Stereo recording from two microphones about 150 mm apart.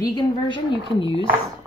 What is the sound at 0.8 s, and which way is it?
Speech, 30° right (ahead or behind).